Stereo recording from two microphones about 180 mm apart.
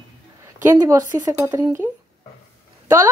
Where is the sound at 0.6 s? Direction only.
20° right (ahead or behind).